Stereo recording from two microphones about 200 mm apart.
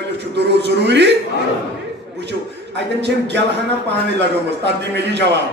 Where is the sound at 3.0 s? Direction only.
60° right (ahead or behind).